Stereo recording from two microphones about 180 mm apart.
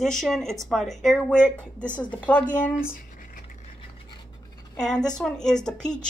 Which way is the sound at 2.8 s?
50° left (ahead or behind).